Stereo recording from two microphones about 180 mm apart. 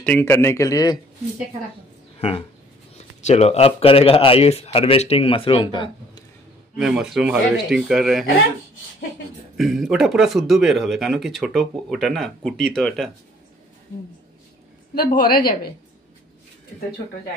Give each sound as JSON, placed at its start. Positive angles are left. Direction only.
{"t": 0.0, "sound": "speech", "side_deg": 10}
{"t": 2.1, "sound": "speech", "side_deg": 30}
{"t": 6.8, "sound": "speech", "side_deg": -5}
{"t": 9.6, "sound": "speech", "side_deg": 0}
{"t": 15.0, "sound": "a woman's voice", "side_deg": 55}